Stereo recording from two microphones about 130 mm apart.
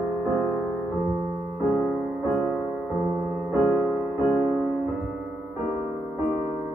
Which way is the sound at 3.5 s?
25° right (ahead or behind).